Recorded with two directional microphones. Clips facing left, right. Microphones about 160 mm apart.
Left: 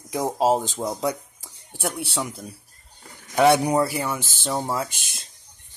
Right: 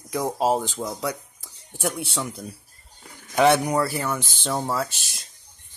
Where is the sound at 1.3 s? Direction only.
15° left (ahead or behind).